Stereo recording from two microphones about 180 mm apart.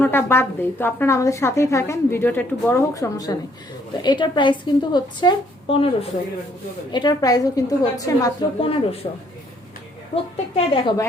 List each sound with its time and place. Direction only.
0.0 s a woman's voice: 10° left (ahead or behind)
8.6 s a man's voice: 30° left (ahead or behind)
10.5 s a woman's voice: 30° left (ahead or behind)